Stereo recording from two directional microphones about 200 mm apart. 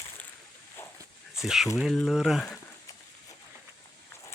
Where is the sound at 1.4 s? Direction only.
Centre (ahead or behind).